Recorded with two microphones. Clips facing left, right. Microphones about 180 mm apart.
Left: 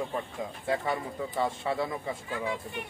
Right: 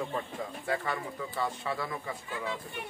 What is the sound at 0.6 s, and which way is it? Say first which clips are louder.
Speech: left 4 dB; 20° left (ahead or behind).